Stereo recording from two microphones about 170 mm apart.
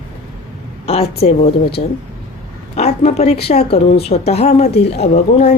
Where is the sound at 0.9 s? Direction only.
35° left (ahead or behind).